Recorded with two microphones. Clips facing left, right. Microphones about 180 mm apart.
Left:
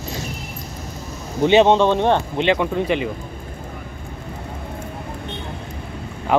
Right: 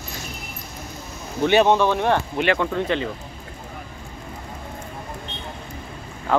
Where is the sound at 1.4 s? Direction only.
20° left (ahead or behind).